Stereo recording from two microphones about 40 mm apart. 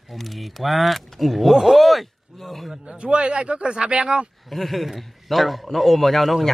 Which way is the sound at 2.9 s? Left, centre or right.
Right.